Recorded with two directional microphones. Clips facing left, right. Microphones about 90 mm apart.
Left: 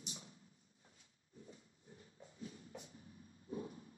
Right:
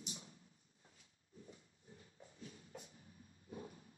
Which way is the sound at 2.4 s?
30° left (ahead or behind).